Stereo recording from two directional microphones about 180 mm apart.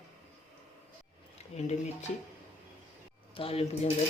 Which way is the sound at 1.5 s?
40° left (ahead or behind).